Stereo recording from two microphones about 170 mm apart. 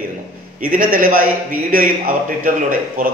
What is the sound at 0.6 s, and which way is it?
A man's voice, 55° right (ahead or behind).